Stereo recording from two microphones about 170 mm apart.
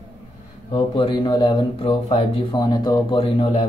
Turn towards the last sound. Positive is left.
turn(degrees=30)  # may be behind; listen again after turning